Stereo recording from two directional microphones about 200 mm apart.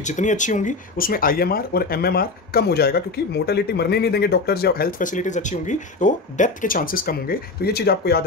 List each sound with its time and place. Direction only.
0.0 s speech: 35° left (ahead or behind); by 8.2 s 55° left (ahead or behind)